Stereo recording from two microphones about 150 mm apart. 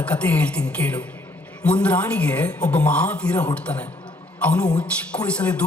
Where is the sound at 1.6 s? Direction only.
5° left (ahead or behind).